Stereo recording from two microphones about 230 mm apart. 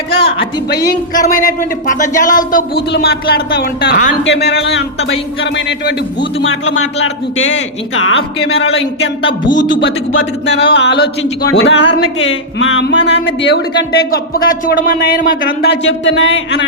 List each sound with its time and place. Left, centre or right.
0.3 s a man's voice: left
1.1 s a man's voice: left
8.7 s a man's voice: left
10.8 s speech: left
15.4 s speech: left